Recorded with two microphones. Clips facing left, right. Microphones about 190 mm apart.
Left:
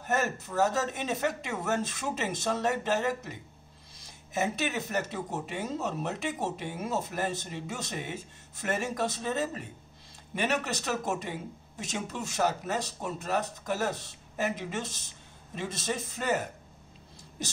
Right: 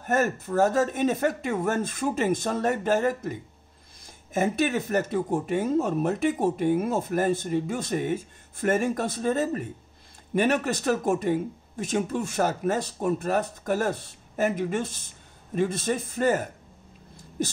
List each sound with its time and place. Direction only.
0.0 s speech: 50° right (ahead or behind)